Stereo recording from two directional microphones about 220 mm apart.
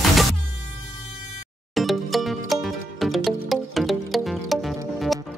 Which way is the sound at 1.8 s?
Centre (ahead or behind).